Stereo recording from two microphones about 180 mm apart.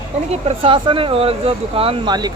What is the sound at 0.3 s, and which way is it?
Speech, 35° right (ahead or behind).